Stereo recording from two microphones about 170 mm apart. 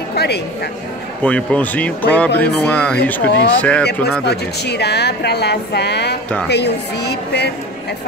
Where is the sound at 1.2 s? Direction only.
10° left (ahead or behind).